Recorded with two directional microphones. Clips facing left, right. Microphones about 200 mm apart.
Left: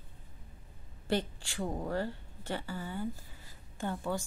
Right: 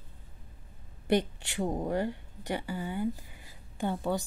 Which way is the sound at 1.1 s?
20° right (ahead or behind).